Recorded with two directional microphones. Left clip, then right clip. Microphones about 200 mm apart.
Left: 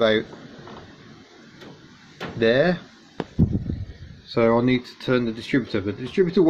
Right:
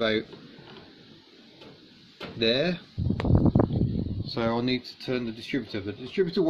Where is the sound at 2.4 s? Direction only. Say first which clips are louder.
Left 6 dB; 15° right (ahead or behind).